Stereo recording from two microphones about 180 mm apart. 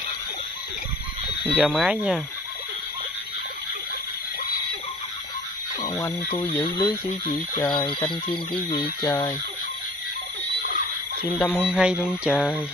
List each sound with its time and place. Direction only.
1.4 s speech: 10° right (ahead or behind)
5.8 s radio: 20° left (ahead or behind)
7.5 s speech: 20° left (ahead or behind)
11.3 s speech: 10° left (ahead or behind)
11.6 s speech: 5° right (ahead or behind)